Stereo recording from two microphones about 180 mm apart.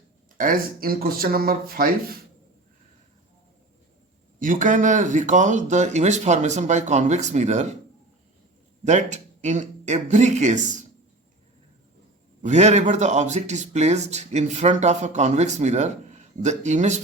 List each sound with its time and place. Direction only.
0.3 s speech: 50° right (ahead or behind)
4.4 s speech: 45° right (ahead or behind)
8.8 s speech: 40° right (ahead or behind)
12.4 s speech: 40° right (ahead or behind)